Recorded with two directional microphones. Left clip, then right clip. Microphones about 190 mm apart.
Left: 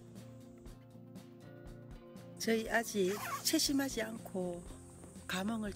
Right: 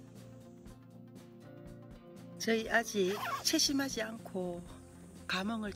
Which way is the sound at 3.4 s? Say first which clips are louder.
Right 1 dB; 10° left (ahead or behind).